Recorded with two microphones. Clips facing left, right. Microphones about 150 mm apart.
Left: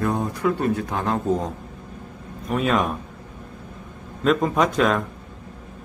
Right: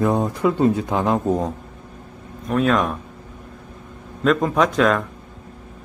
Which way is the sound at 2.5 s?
5° left (ahead or behind).